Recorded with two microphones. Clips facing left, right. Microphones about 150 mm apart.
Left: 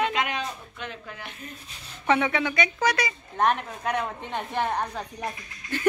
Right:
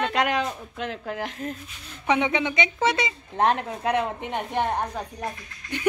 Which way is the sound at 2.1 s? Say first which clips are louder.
Even; 20° right (ahead or behind).